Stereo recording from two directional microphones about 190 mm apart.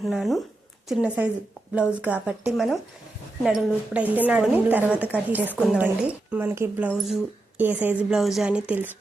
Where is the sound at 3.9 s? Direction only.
10° right (ahead or behind).